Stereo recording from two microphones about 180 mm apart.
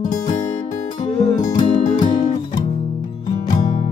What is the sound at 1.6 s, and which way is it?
Music, 45° left (ahead or behind).